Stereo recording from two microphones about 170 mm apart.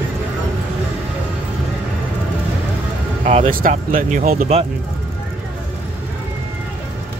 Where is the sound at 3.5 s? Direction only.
55° right (ahead or behind).